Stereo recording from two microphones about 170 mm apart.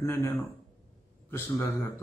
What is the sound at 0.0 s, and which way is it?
Speech, 15° left (ahead or behind).